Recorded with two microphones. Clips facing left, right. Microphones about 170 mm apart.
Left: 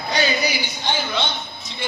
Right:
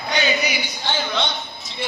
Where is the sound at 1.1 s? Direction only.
Centre (ahead or behind).